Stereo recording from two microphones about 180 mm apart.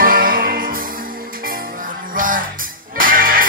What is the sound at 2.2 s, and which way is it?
Music, 50° right (ahead or behind).